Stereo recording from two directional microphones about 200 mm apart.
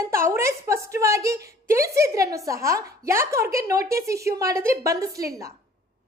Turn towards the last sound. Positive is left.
turn(degrees=-15)  # may be behind; listen again after turning